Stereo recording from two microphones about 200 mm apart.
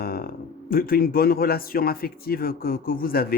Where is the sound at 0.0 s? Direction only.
50° left (ahead or behind).